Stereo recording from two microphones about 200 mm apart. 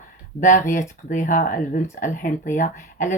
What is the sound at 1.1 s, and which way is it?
Speech, 40° left (ahead or behind).